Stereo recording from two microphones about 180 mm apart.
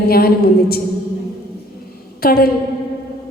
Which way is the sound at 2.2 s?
60° left (ahead or behind).